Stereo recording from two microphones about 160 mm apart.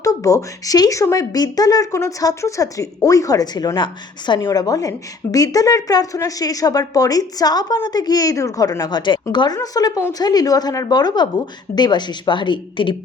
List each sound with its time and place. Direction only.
0.0 s a woman's voice: 20° left (ahead or behind)